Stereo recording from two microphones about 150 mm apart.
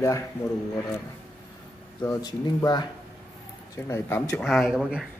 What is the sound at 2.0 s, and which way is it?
Speech, 25° left (ahead or behind).